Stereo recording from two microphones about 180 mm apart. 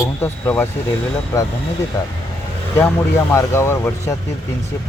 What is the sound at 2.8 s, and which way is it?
Speech, 15° left (ahead or behind).